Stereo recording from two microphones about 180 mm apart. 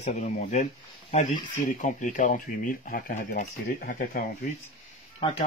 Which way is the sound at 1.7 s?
45° left (ahead or behind).